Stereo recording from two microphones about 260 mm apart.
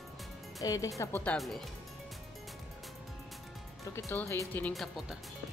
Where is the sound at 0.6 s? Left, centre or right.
Centre.